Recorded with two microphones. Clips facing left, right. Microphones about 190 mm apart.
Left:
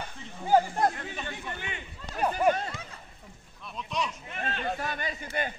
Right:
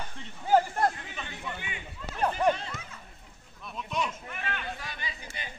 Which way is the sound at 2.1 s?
10° left (ahead or behind).